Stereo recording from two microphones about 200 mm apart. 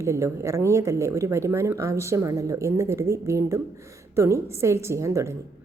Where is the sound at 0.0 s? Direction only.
15° right (ahead or behind).